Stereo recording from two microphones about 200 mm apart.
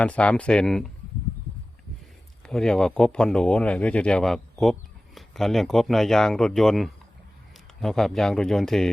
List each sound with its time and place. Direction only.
0.0 s speech: 5° left (ahead or behind)
2.4 s speech: 5° left (ahead or behind)